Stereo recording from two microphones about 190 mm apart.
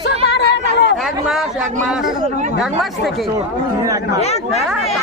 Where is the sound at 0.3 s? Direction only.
65° left (ahead or behind).